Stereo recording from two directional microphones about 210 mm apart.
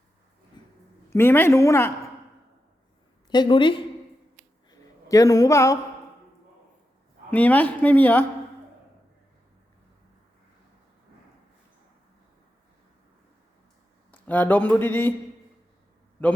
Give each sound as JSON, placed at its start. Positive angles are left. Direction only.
{"t": 0.6, "sound": "a sound", "side_deg": 20}
{"t": 1.1, "sound": "a woman's voice", "side_deg": 10}
{"t": 3.2, "sound": "a woman's voice", "side_deg": 20}
{"t": 4.7, "sound": "a sound", "side_deg": 15}
{"t": 7.3, "sound": "a woman's voice", "side_deg": 5}
{"t": 14.1, "sound": "speech", "side_deg": 10}